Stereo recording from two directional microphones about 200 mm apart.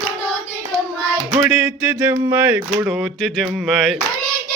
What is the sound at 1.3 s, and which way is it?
Speech, 5° right (ahead or behind).